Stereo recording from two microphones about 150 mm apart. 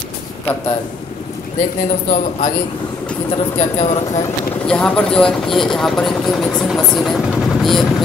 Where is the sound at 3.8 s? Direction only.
40° left (ahead or behind).